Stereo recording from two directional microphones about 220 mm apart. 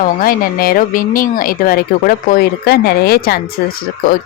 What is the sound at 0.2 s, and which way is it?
Speech, 40° left (ahead or behind).